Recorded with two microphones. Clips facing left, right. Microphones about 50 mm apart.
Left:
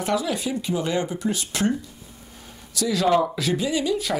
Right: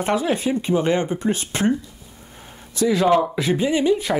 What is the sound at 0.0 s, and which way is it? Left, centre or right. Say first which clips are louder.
Speech: right 4 dB; right.